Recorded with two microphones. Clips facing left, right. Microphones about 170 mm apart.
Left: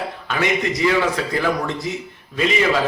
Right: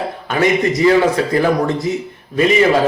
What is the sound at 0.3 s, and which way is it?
A man's voice, 40° right (ahead or behind).